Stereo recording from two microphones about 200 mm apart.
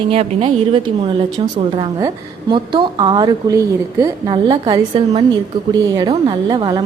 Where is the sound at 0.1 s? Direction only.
30° right (ahead or behind).